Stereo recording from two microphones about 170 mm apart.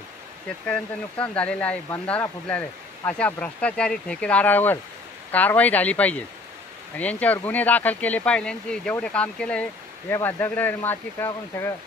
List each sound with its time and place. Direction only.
0.7 s speech: 5° left (ahead or behind)